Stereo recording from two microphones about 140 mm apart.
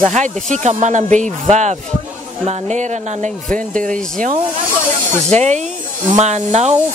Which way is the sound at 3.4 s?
5° left (ahead or behind).